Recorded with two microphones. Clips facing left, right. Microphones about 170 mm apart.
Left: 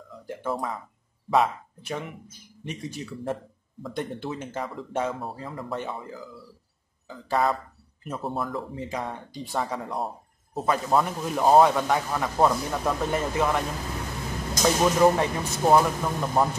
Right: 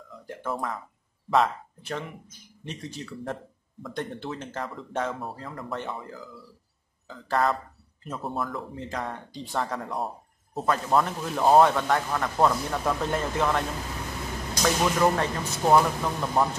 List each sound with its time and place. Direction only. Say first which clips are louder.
0.3 s speech: left 2 dB; centre (ahead or behind)